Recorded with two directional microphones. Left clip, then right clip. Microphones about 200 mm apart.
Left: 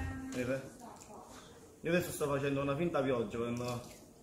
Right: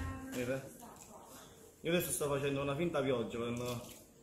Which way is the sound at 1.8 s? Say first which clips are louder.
Left 1 dB; 15° right (ahead or behind).